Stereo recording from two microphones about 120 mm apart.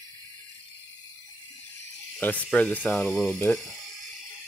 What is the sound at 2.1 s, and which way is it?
Speech, 15° left (ahead or behind).